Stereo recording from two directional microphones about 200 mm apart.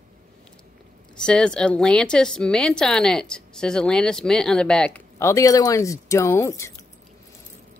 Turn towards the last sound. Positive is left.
turn(degrees=15)  # may be behind; listen again after turning